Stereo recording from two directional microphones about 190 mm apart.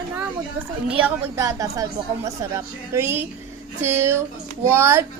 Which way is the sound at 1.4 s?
15° right (ahead or behind).